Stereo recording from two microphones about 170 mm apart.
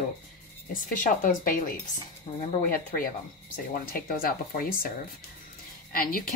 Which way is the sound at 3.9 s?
60° left (ahead or behind).